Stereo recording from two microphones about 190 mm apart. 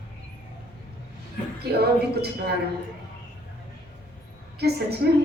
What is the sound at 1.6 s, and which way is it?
Speech, 55° right (ahead or behind).